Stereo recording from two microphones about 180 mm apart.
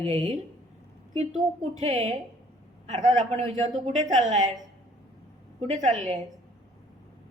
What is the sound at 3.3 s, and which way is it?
Speech, 40° right (ahead or behind).